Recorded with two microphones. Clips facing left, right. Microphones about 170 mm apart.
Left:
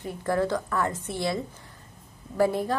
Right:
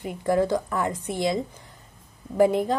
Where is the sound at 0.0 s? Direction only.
15° right (ahead or behind).